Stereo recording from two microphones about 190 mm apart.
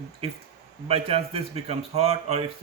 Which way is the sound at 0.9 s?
30° right (ahead or behind).